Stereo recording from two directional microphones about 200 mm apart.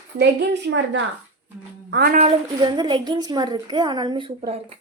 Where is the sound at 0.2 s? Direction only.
60° right (ahead or behind).